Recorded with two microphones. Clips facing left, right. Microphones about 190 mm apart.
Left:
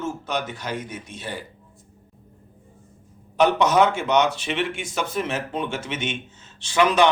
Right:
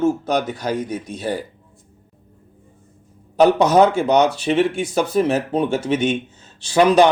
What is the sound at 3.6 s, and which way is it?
Speech, 35° right (ahead or behind).